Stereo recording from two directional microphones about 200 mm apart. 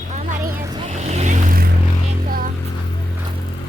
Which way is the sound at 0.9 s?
35° right (ahead or behind).